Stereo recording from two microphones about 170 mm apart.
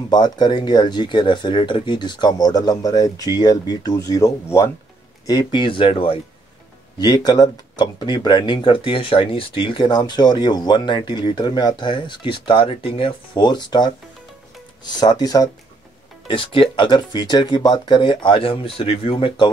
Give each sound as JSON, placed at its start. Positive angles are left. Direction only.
{"t": 0.1, "sound": "speech", "side_deg": 25}